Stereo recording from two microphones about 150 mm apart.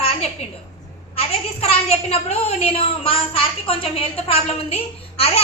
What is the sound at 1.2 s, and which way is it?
A woman's voice, 45° left (ahead or behind).